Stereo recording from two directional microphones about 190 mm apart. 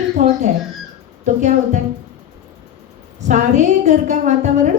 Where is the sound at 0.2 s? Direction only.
40° right (ahead or behind).